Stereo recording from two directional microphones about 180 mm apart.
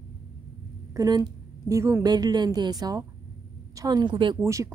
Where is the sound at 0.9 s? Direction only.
20° right (ahead or behind).